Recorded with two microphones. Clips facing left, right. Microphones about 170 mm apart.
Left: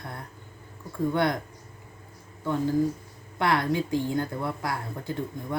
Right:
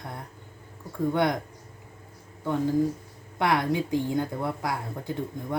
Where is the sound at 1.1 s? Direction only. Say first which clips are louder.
Right 1 dB; 15° right (ahead or behind).